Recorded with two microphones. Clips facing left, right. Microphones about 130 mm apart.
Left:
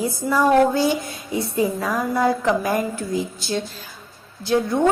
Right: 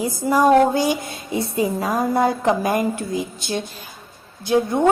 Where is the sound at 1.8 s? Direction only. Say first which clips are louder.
Right 2 dB; 30° right (ahead or behind).